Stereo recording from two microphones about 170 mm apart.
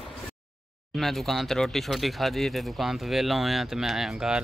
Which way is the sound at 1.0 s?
Centre (ahead or behind).